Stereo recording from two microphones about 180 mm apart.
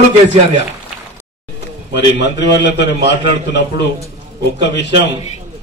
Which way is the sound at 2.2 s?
75° left (ahead or behind).